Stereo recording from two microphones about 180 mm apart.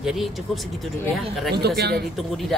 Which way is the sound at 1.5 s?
65° right (ahead or behind).